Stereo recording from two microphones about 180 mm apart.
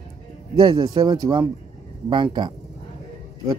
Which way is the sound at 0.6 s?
25° right (ahead or behind).